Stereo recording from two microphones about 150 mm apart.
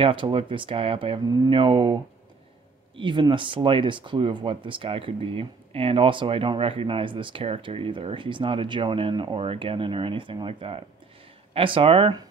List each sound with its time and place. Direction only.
0.0 s speech: 35° right (ahead or behind)
3.0 s speech: 30° right (ahead or behind)